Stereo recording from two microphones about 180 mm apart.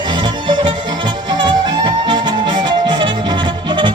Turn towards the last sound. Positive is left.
turn(degrees=-25)  # may be behind; listen again after turning